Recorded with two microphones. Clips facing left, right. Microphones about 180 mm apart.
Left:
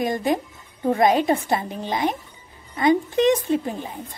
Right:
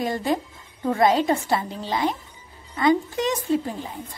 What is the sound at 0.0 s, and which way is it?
A woman's voice, 15° left (ahead or behind).